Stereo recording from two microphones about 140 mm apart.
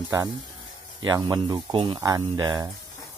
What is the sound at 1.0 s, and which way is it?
Speech, 30° right (ahead or behind).